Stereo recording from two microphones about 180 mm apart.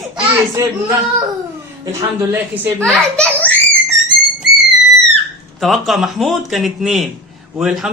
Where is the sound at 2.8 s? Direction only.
5° left (ahead or behind).